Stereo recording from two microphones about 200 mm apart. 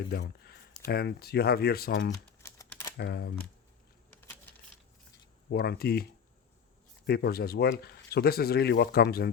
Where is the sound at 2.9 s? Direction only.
55° left (ahead or behind).